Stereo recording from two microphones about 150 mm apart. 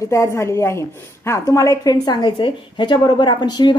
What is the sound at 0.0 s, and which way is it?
A woman's voice, 20° left (ahead or behind).